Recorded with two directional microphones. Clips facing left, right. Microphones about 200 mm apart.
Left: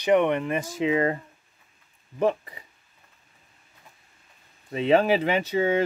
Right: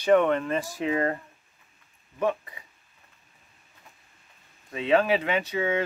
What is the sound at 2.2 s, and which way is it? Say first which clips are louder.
Speech: left 3 dB; 30° left (ahead or behind).